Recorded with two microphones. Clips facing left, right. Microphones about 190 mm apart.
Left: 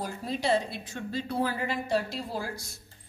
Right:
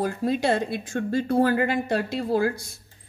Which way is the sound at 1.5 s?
65° right (ahead or behind).